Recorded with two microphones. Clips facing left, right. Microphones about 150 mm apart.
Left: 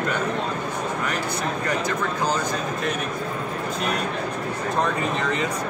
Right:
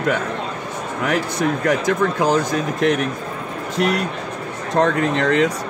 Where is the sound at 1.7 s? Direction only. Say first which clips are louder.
Right 6 dB; 90° right.